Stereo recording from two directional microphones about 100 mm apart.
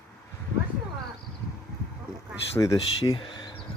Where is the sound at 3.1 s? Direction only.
55° left (ahead or behind).